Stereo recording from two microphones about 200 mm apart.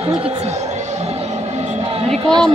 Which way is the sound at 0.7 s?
35° right (ahead or behind).